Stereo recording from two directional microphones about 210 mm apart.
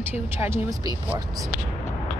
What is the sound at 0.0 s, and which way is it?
A woman's voice, 10° right (ahead or behind).